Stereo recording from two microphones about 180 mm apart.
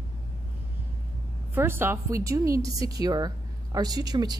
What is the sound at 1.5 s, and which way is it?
A woman's voice, 10° right (ahead or behind).